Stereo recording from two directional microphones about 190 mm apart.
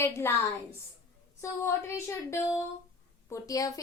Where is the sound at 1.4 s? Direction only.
15° left (ahead or behind).